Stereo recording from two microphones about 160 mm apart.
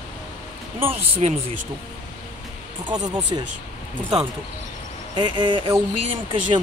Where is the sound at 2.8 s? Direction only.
25° right (ahead or behind).